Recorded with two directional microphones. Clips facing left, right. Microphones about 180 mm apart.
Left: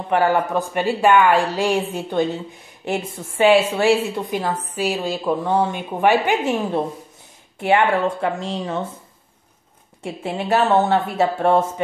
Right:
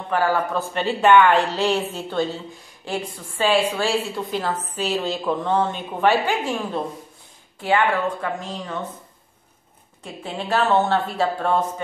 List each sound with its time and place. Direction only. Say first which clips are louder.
0.1 s a woman's voice: left 3 dB; 20° left (ahead or behind)
10.0 s speech: left 5 dB; 25° left (ahead or behind)